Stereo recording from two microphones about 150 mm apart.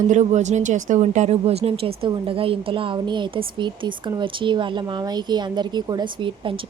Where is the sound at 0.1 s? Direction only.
50° right (ahead or behind).